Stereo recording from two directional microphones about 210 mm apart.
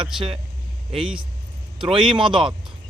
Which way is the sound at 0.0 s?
25° right (ahead or behind).